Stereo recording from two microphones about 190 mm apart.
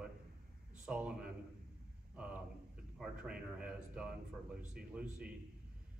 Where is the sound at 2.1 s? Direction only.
5° right (ahead or behind).